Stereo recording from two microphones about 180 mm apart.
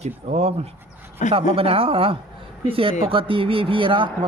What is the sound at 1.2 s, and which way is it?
Speech, 45° left (ahead or behind).